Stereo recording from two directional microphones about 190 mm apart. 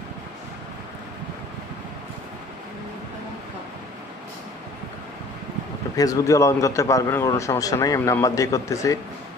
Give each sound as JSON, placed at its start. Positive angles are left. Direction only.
{"t": 5.9, "sound": "a man's voice", "side_deg": 15}